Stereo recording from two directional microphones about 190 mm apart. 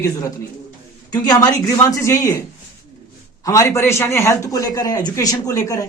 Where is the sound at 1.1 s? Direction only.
20° left (ahead or behind).